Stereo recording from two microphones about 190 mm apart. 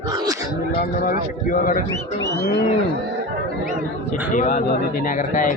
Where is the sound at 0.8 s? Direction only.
45° left (ahead or behind).